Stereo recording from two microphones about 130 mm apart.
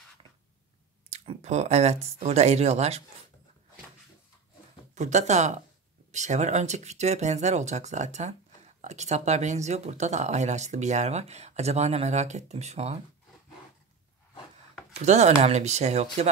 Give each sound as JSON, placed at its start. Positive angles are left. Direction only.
{"t": 1.1, "sound": "speech", "side_deg": -50}
{"t": 4.9, "sound": "speech", "side_deg": -65}
{"t": 15.0, "sound": "speech", "side_deg": -60}